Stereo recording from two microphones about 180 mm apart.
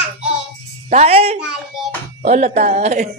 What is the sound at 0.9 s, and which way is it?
Speech, 35° right (ahead or behind).